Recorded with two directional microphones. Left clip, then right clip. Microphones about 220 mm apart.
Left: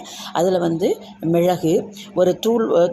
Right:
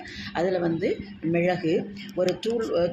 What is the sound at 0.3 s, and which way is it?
Speech, 30° left (ahead or behind).